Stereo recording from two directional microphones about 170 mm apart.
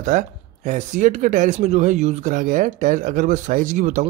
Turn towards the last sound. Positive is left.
turn(degrees=-45)  # may be behind; listen again after turning